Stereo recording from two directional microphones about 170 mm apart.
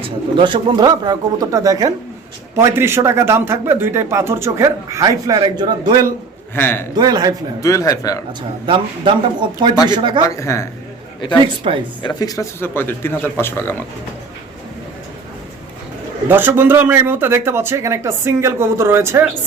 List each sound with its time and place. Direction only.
0.0 s a man's voice: 30° right (ahead or behind)
6.6 s speech: 15° left (ahead or behind)
6.9 s speech: 20° right (ahead or behind)
7.6 s speech: 20° left (ahead or behind)
8.6 s speech: 30° right (ahead or behind)
10.2 s speech: 20° left (ahead or behind)
11.6 s speech: 30° right (ahead or behind)
12.0 s speech: 20° left (ahead or behind)
16.3 s a man's voice: 10° right (ahead or behind)